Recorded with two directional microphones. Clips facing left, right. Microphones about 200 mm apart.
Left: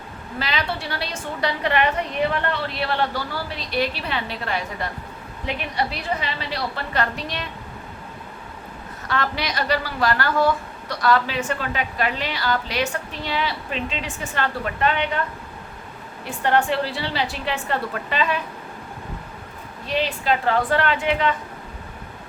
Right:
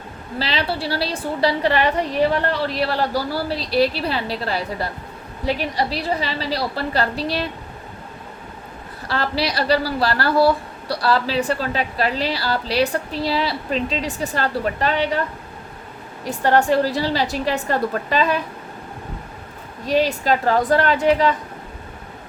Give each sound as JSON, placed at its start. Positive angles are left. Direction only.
{"t": 0.3, "sound": "a woman's voice", "side_deg": -30}
{"t": 9.0, "sound": "a woman's voice", "side_deg": -30}
{"t": 16.2, "sound": "a woman's voice", "side_deg": -40}
{"t": 19.8, "sound": "a woman's voice", "side_deg": -40}